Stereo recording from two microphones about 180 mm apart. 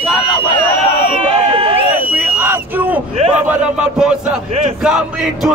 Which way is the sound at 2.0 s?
10° right (ahead or behind).